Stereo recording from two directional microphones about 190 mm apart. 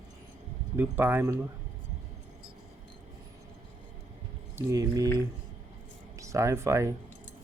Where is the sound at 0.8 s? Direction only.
10° right (ahead or behind).